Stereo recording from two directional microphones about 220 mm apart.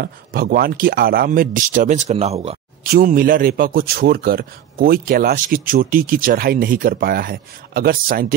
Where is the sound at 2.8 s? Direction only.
40° right (ahead or behind).